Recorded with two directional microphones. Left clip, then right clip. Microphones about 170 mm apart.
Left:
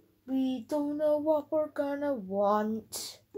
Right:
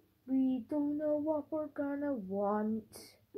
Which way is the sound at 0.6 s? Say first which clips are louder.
Left 6 dB; 20° left (ahead or behind).